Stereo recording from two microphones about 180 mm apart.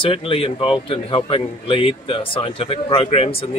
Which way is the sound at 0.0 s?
30° left (ahead or behind).